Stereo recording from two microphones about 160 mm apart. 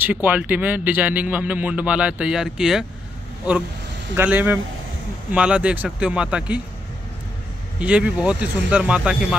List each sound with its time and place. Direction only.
0.0 s speech: 10° right (ahead or behind)
4.1 s speech: 10° right (ahead or behind)
7.8 s speech: 10° right (ahead or behind)